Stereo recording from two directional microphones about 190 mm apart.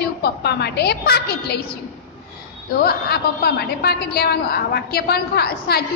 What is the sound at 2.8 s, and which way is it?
A woman's voice, 55° left (ahead or behind).